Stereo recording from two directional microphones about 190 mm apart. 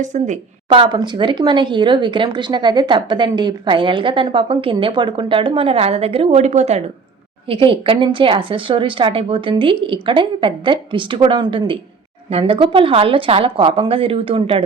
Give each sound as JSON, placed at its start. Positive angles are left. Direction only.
{"t": 0.0, "sound": "a woman's voice", "side_deg": -40}
{"t": 0.7, "sound": "speech", "side_deg": -25}